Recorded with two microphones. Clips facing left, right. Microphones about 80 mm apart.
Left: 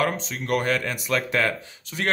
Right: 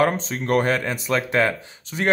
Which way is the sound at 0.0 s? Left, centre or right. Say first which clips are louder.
Right 5 dB; right.